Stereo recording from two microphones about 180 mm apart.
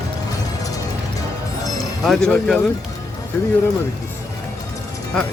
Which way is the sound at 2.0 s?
5° left (ahead or behind).